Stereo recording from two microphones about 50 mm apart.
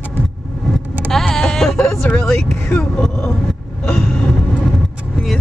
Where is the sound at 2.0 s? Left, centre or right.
Left.